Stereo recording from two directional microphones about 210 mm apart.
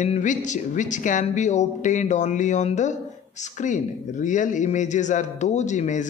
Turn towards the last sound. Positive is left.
turn(degrees=35)  # may be behind; listen again after turning